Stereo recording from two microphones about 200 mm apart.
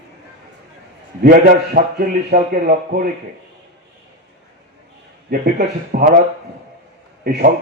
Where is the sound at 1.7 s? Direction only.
45° right (ahead or behind).